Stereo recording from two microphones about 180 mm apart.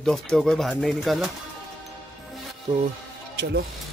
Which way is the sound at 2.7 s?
25° right (ahead or behind).